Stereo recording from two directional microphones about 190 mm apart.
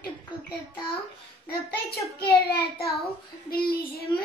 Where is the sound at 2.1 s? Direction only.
55° left (ahead or behind).